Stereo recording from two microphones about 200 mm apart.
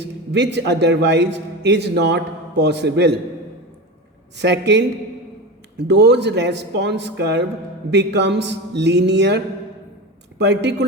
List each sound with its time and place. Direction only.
0.0 s a man's voice: 60° right (ahead or behind)
4.4 s speech: 60° right (ahead or behind)